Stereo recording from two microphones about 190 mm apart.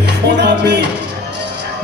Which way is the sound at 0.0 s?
65° right (ahead or behind).